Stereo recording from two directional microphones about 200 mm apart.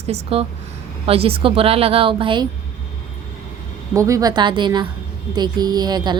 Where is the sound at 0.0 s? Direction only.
30° right (ahead or behind).